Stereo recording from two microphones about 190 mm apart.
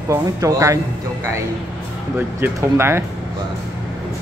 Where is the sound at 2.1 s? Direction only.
10° right (ahead or behind).